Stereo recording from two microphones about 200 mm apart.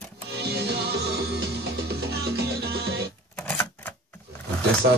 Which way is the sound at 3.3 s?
10° left (ahead or behind).